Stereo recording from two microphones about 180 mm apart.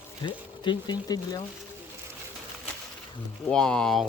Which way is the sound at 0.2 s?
25° left (ahead or behind).